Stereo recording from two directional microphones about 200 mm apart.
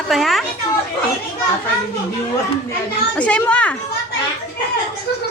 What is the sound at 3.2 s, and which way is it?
Speech, 5° left (ahead or behind).